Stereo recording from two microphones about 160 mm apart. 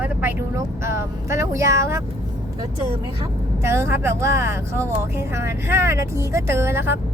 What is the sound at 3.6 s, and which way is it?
Speech, 15° right (ahead or behind).